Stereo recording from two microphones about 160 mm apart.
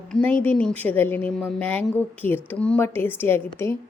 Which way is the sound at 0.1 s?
10° left (ahead or behind).